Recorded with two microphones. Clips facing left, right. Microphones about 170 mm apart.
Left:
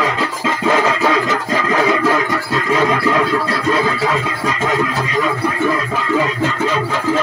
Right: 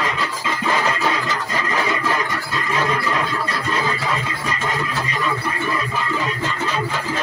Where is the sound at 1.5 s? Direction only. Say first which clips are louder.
Left 7 dB; 85° left.